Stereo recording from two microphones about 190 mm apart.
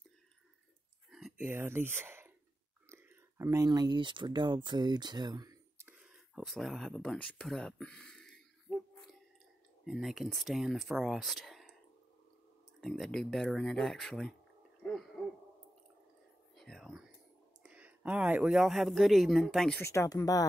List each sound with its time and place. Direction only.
1.1 s a sound: 5° right (ahead or behind)
2.9 s speech: 15° right (ahead or behind); by 8.7 s 5° left (ahead or behind)
9.8 s speech: centre (ahead or behind)
12.8 s speech: 5° left (ahead or behind)
16.5 s whispering: centre (ahead or behind)
17.6 s speech: 5° right (ahead or behind)
19.8 s speech: 15° left (ahead or behind)